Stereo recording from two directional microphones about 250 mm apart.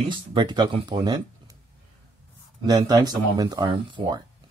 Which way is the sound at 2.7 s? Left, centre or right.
Centre.